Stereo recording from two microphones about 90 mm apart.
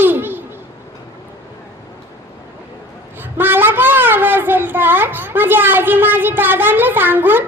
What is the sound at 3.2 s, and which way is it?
A woman's voice, 20° right (ahead or behind).